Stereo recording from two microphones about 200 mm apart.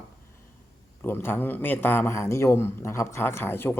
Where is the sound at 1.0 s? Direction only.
10° left (ahead or behind).